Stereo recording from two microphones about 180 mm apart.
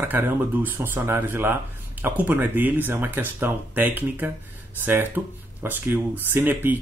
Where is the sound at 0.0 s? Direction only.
10° right (ahead or behind).